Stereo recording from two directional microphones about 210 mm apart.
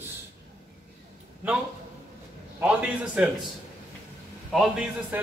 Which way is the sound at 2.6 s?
5° right (ahead or behind).